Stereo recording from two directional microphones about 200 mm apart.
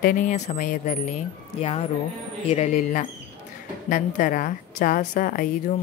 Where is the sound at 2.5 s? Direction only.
35° left (ahead or behind).